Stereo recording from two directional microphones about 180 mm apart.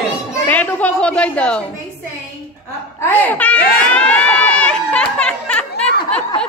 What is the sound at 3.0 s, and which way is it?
Crowd, 10° left (ahead or behind).